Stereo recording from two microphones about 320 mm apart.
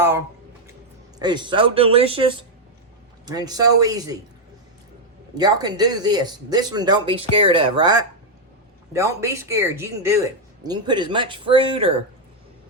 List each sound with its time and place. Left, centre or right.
1.2 s speech: centre
5.3 s speech: centre